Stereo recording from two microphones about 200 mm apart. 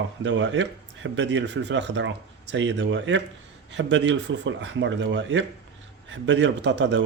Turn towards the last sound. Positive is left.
turn(degrees=-60)  # may be behind; listen again after turning